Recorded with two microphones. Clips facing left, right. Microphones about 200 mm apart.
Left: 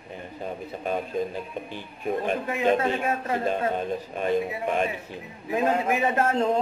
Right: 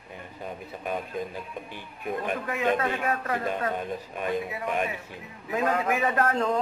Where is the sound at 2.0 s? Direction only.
25° left (ahead or behind).